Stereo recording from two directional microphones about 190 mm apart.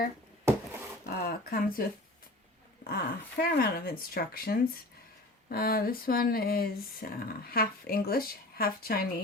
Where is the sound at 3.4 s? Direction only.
50° left (ahead or behind).